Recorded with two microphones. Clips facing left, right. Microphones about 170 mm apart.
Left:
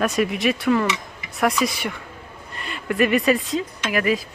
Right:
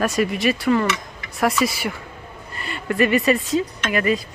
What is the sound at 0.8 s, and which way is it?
Tick-tock, 20° left (ahead or behind).